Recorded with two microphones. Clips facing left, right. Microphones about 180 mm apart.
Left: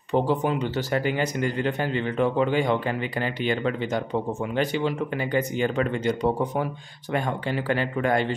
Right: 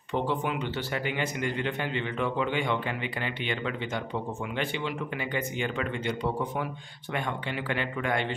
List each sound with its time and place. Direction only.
0.1 s a man's voice: 40° left (ahead or behind)